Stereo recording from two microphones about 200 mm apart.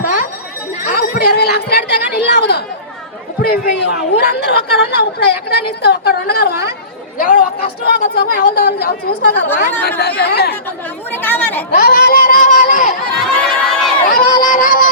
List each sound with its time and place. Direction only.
0.8 s speech: 50° left (ahead or behind)
11.1 s speech: 10° left (ahead or behind)
11.7 s speech: 50° left (ahead or behind)
13.1 s crowd: 5° left (ahead or behind)
14.1 s speech: 45° left (ahead or behind)